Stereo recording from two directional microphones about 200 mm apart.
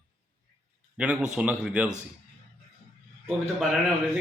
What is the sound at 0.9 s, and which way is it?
Speech, 5° right (ahead or behind).